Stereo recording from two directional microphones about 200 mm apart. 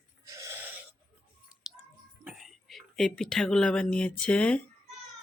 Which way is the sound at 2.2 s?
Centre (ahead or behind).